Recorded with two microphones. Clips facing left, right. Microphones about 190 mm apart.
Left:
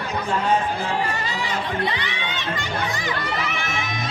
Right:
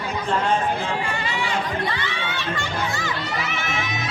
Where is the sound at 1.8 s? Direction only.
20° left (ahead or behind).